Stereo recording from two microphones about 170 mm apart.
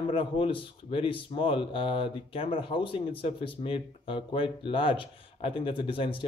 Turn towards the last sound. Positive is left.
turn(degrees=30)  # may be behind; listen again after turning